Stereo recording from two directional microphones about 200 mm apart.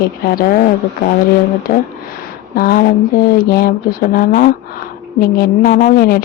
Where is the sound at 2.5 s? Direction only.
45° left (ahead or behind).